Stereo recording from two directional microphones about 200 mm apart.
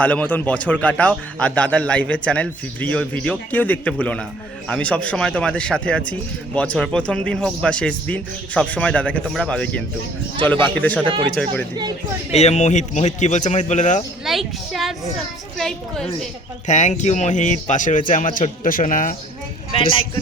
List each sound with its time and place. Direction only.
0.0 s a man's voice: 5° left (ahead or behind)
12.3 s speech: 35° left (ahead or behind)
14.3 s a man's voice: centre (ahead or behind)
16.6 s speech: 35° left (ahead or behind)